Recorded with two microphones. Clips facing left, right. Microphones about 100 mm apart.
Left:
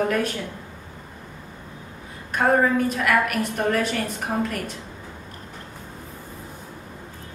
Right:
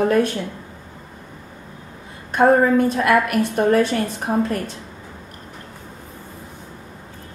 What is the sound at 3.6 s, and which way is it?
A woman's voice, 30° right (ahead or behind).